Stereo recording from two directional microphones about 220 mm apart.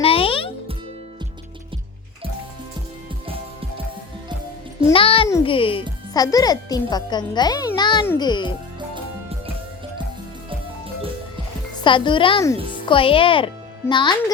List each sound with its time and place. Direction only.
0.0 s music: 25° left (ahead or behind)
4.9 s music: 25° left (ahead or behind)
5.3 s speech: 25° left (ahead or behind)
11.8 s speech: 20° left (ahead or behind)